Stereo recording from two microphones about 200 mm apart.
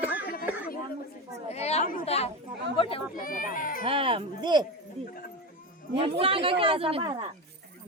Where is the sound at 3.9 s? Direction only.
25° right (ahead or behind).